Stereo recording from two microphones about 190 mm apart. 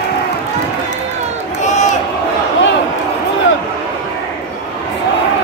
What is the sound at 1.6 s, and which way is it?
Crowd, 40° left (ahead or behind).